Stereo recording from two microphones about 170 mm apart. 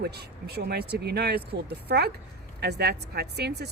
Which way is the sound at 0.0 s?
70° right (ahead or behind).